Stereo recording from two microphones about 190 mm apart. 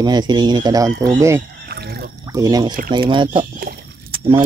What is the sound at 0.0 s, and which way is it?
Speech, 20° right (ahead or behind).